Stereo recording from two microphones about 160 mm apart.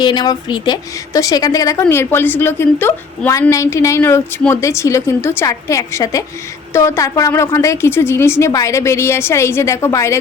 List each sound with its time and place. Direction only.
0.0 s a woman's voice: 25° left (ahead or behind)